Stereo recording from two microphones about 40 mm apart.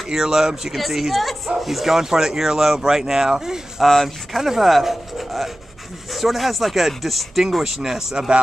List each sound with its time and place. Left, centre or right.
0.1 s speech: centre
3.8 s speech: centre
7.6 s speech: centre